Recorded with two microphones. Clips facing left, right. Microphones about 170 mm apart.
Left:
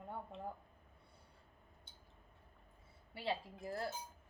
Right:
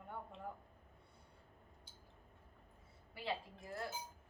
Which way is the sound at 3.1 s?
35° left (ahead or behind).